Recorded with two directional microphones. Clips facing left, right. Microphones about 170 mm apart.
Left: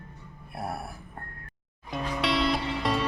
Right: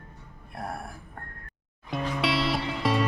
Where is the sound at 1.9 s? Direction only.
Centre (ahead or behind).